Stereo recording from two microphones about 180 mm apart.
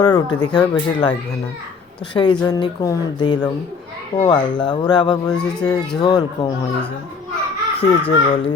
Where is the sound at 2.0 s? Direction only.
25° left (ahead or behind).